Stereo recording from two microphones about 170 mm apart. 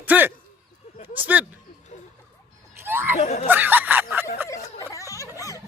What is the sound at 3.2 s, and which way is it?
Speech, 40° left (ahead or behind).